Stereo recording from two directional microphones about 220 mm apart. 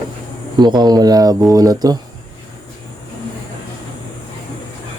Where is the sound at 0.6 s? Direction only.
20° right (ahead or behind).